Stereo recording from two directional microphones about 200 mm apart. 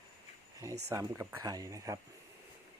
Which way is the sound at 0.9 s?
10° right (ahead or behind).